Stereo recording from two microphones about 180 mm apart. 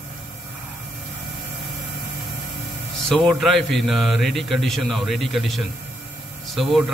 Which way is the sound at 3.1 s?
Centre (ahead or behind).